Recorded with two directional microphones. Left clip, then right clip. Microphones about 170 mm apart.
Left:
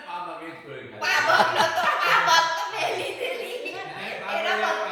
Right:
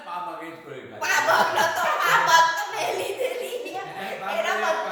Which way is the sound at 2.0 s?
15° right (ahead or behind).